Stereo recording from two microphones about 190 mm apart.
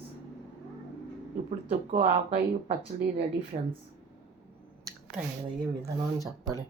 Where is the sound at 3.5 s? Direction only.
40° right (ahead or behind).